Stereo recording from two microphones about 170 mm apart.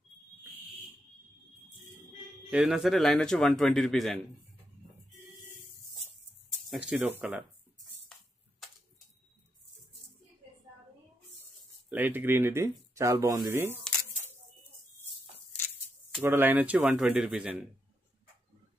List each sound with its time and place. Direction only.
2.5 s speech: 5° right (ahead or behind)
6.7 s speech: 5° right (ahead or behind)
11.9 s speech: 10° right (ahead or behind)
16.2 s speech: 10° right (ahead or behind)